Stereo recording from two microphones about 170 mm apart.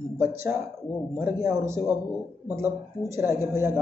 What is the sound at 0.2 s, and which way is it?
Speech, 15° right (ahead or behind).